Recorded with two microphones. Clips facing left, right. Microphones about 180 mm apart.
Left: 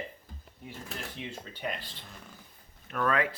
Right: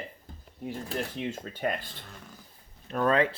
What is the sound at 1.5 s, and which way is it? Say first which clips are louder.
Speech: right 6 dB; 50° right (ahead or behind).